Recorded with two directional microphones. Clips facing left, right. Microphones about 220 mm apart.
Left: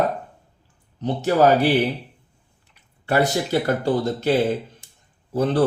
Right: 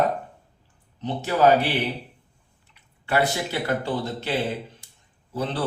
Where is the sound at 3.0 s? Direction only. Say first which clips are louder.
Left 4 dB; 40° left (ahead or behind).